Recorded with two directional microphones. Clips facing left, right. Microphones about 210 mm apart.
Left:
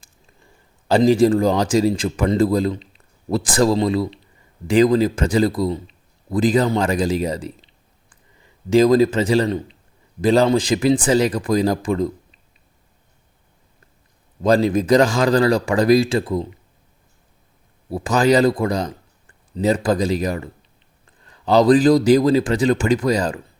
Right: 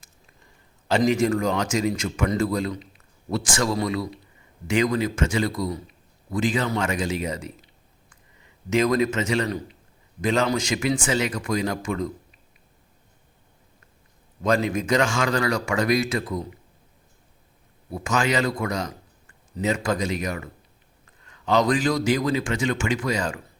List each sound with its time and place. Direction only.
0.9 s a man's voice: 35° left (ahead or behind)
14.4 s a man's voice: 35° left (ahead or behind)
17.9 s a man's voice: 35° left (ahead or behind)